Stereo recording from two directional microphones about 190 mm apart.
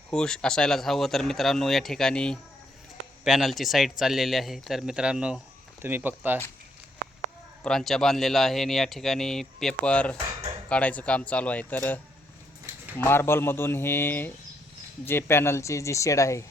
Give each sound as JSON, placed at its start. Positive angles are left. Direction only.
{"t": 0.1, "sound": "speech", "side_deg": 5}
{"t": 7.6, "sound": "speech", "side_deg": 5}
{"t": 13.0, "sound": "speech", "side_deg": 10}